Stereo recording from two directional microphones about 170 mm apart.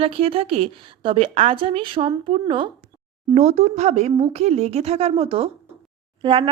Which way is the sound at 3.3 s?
40° right (ahead or behind).